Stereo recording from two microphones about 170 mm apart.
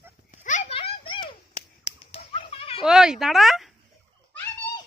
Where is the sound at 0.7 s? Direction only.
30° left (ahead or behind).